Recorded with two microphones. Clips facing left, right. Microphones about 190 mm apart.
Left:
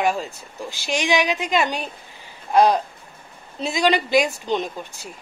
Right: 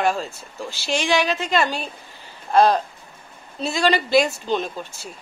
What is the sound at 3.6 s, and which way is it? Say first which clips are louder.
Speech: even; 15° left (ahead or behind).